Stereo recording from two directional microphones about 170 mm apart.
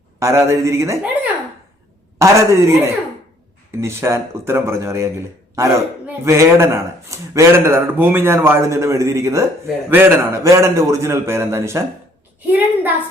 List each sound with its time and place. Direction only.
0.2 s a man's voice: 15° right (ahead or behind)